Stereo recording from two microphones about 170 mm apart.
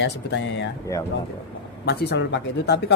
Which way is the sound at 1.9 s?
85° left.